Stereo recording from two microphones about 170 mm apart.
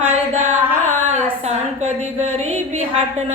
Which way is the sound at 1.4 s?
40° right (ahead or behind).